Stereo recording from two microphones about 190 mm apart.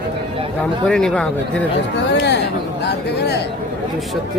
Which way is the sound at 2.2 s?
65° left (ahead or behind).